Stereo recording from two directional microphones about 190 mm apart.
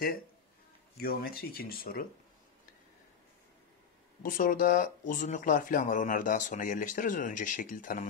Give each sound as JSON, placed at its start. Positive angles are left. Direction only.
{"t": 0.9, "sound": "speech", "side_deg": 50}
{"t": 4.2, "sound": "speech", "side_deg": 45}